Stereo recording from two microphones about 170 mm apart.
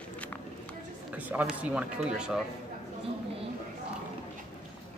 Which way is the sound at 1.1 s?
10° right (ahead or behind).